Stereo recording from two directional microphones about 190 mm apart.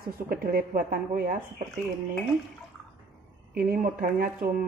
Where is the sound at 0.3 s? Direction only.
50° right (ahead or behind).